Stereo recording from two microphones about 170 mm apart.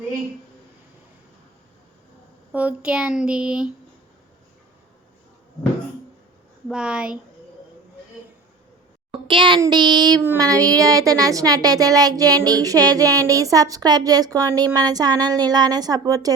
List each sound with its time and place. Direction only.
2.5 s speech: 10° right (ahead or behind)
6.7 s speech: 5° right (ahead or behind)
9.2 s speech: 30° right (ahead or behind)